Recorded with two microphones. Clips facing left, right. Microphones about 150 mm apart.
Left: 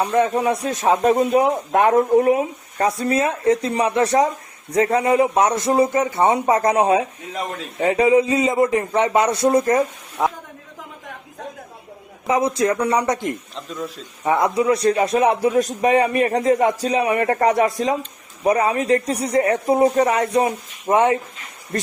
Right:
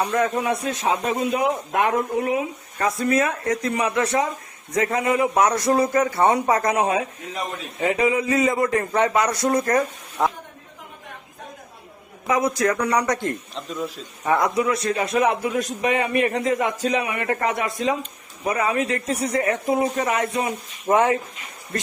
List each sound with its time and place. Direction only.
0.1 s a man's voice: 30° left (ahead or behind)
9.6 s speech: 15° left (ahead or behind)
12.3 s a man's voice: 25° left (ahead or behind)
13.6 s a man's voice: centre (ahead or behind)
14.3 s a man's voice: 20° left (ahead or behind)
14.5 s speech: 30° left (ahead or behind)
20.9 s a man's voice: 25° left (ahead or behind)